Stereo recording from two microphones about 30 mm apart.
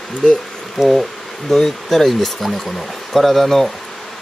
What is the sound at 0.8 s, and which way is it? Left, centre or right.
Speech, centre.